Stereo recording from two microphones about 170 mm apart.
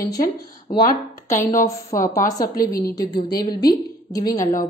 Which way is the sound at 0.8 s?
50° left (ahead or behind).